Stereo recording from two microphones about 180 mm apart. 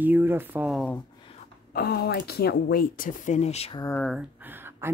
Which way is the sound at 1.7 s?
60° left (ahead or behind).